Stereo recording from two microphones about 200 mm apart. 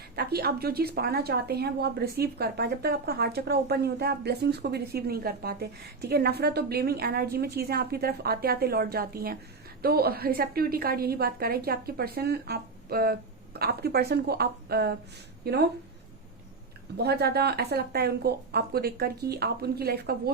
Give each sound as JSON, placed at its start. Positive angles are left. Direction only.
{"t": 0.2, "sound": "a woman's voice", "side_deg": -50}
{"t": 17.0, "sound": "a woman's voice", "side_deg": -55}